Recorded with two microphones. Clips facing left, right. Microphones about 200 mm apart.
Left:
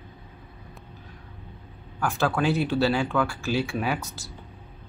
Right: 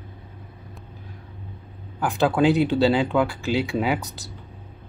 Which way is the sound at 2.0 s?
15° right (ahead or behind).